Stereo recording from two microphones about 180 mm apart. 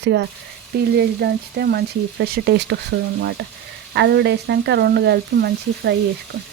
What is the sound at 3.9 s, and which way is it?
Speech, 70° right (ahead or behind).